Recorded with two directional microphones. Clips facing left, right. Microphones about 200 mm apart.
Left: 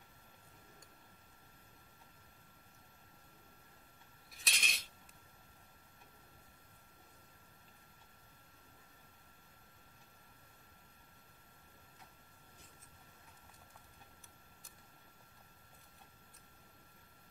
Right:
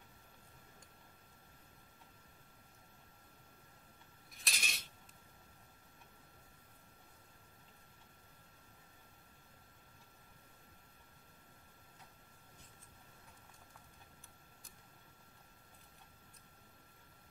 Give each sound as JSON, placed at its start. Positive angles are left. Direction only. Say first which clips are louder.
{"t": 4.3, "sound": "coin", "louder": "even", "side_deg": 0}